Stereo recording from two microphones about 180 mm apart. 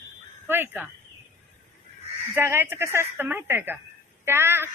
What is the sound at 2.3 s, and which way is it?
A woman's voice, 10° right (ahead or behind).